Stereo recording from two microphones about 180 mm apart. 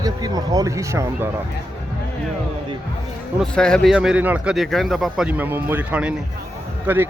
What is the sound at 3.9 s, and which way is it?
A man's voice, 5° right (ahead or behind).